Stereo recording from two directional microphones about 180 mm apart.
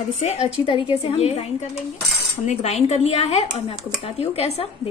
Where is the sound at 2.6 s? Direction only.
40° left (ahead or behind).